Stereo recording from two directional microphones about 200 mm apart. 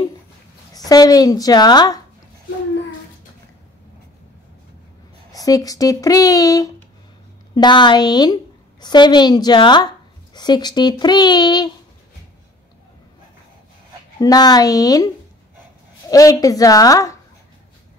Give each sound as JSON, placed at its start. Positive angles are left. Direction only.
{"t": 0.7, "sound": "a woman's voice", "side_deg": 20}
{"t": 5.3, "sound": "a woman's voice", "side_deg": 15}
{"t": 14.2, "sound": "a woman's voice", "side_deg": 20}